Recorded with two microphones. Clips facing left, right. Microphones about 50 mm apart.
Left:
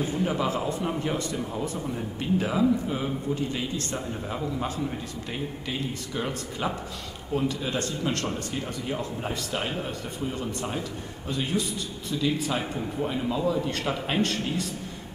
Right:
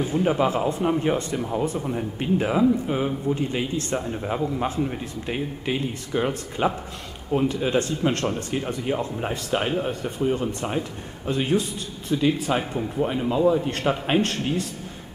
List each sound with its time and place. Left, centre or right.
0.0 s speech: right
12.7 s speech: right